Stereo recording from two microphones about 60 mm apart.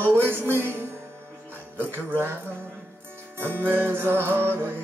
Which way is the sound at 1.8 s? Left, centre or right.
Right.